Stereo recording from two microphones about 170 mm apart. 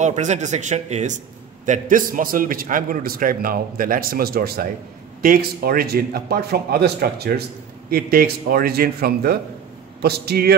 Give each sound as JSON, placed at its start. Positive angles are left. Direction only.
{"t": 0.0, "sound": "a man's voice", "side_deg": -45}